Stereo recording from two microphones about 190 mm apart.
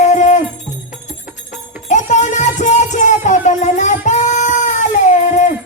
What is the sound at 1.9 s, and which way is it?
Music, 40° left (ahead or behind).